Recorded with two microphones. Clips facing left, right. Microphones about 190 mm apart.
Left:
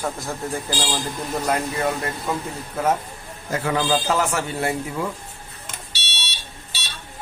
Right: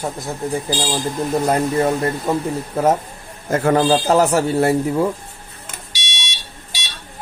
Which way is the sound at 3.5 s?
45° right (ahead or behind).